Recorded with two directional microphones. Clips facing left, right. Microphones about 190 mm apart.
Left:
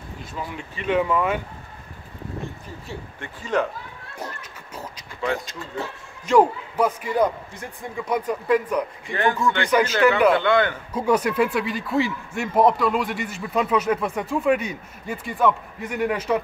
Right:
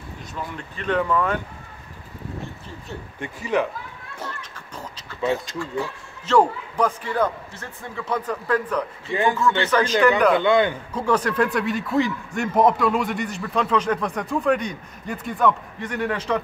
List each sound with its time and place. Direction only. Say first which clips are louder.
0.4 s a man's voice: even; 10° left (ahead or behind)
3.2 s a man's voice: right 1 dB; 10° right (ahead or behind)
4.2 s a sound: even; 10° left (ahead or behind)
5.5 s a man's voice: right 4 dB; 20° left (ahead or behind); by 10.3 s 5° left (ahead or behind)
10.3 s a man's voice: right 1 dB; 15° right (ahead or behind)
10.9 s a man's voice: left 1 dB; 10° left (ahead or behind)